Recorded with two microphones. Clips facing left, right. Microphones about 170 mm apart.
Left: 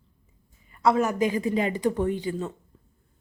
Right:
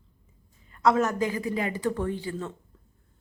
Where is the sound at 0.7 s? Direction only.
5° left (ahead or behind).